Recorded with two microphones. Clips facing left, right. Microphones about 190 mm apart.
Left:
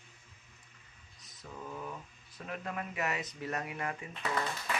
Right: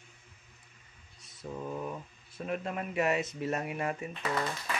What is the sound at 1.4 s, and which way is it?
Speech, 25° right (ahead or behind).